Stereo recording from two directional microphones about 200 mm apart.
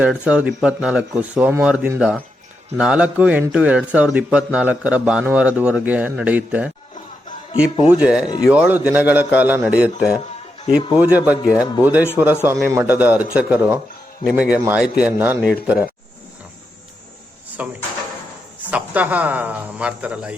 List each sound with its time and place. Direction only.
0.0 s a man's voice: 5° right (ahead or behind)
7.9 s a man's voice: 5° right (ahead or behind)
17.6 s a man's voice: 10° right (ahead or behind)